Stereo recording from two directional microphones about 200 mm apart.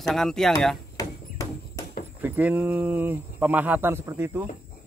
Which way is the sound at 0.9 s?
15° left (ahead or behind).